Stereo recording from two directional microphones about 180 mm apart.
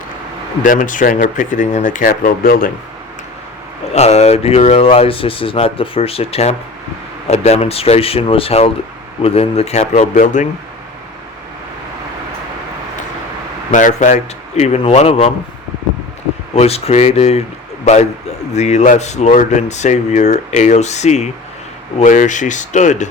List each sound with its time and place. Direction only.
0.6 s speech: 45° left (ahead or behind)
3.9 s speech: 35° left (ahead or behind)
13.7 s speech: 45° left (ahead or behind)
16.6 s speech: 35° left (ahead or behind)